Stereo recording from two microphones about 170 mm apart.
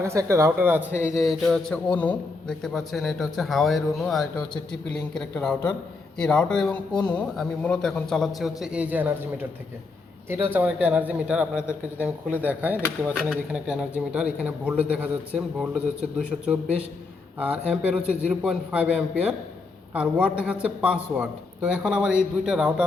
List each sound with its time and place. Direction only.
0.0 s a man's voice: 15° right (ahead or behind)
1.1 s a man's voice: centre (ahead or behind)
5.3 s a man's voice: 5° left (ahead or behind); by 9.1 s 10° right (ahead or behind)
10.5 s a man's voice: 10° right (ahead or behind)